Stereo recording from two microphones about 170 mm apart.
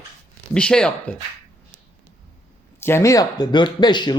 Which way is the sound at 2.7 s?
15° left (ahead or behind).